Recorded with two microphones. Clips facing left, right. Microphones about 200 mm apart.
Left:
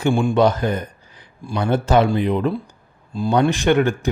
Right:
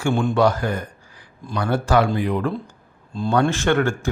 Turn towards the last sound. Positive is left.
turn(degrees=20)  # may be behind; listen again after turning